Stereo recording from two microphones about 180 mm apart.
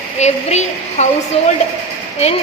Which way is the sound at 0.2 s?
40° left (ahead or behind).